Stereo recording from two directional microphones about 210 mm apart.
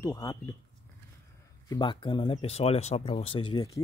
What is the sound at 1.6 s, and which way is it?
Speech, 20° left (ahead or behind).